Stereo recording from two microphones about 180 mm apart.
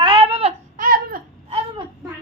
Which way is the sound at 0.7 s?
55° right (ahead or behind).